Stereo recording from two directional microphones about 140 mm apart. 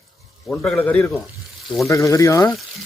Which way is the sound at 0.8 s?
10° left (ahead or behind).